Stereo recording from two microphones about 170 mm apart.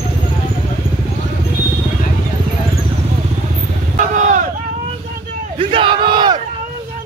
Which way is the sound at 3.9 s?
50° right (ahead or behind).